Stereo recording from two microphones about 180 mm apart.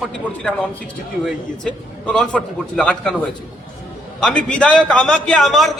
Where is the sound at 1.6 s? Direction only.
5° left (ahead or behind).